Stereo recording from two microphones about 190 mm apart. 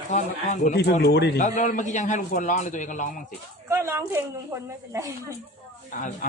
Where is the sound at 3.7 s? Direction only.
15° right (ahead or behind).